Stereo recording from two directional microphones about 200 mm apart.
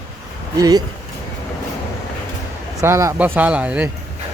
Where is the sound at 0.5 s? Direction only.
20° right (ahead or behind).